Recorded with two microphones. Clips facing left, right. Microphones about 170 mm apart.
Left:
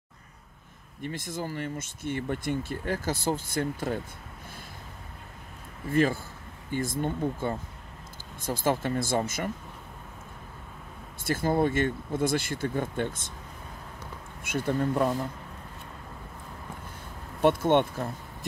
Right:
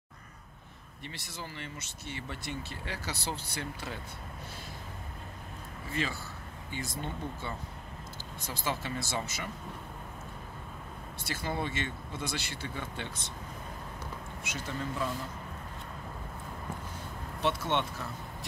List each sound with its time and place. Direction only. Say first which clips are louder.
1.0 s speech: left 10 dB; 50° left (ahead or behind)
5.9 s speech: left 11 dB; 50° left (ahead or behind)
11.2 s speech: left 10 dB; 50° left (ahead or behind)
14.4 s speech: left 11 dB; 55° left (ahead or behind)
17.4 s speech: left 9 dB; 50° left (ahead or behind)